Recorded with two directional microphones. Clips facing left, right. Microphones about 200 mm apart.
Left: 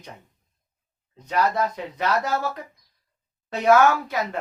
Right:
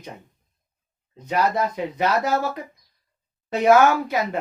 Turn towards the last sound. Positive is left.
turn(degrees=-15)  # may be behind; listen again after turning